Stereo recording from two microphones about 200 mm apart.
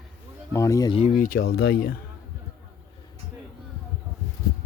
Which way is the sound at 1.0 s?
35° left (ahead or behind).